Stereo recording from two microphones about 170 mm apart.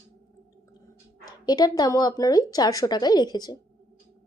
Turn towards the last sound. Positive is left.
turn(degrees=25)  # may be behind; listen again after turning